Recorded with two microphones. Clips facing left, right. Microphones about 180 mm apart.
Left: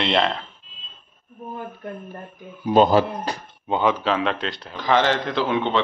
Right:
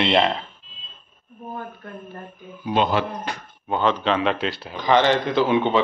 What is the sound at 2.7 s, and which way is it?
Speech, 40° left (ahead or behind).